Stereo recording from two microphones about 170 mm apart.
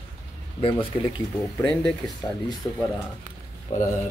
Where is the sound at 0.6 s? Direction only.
30° left (ahead or behind).